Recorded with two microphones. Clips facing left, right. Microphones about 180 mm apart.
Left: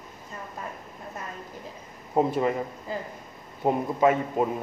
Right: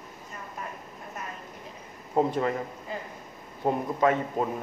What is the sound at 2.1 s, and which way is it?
Speech, 5° left (ahead or behind).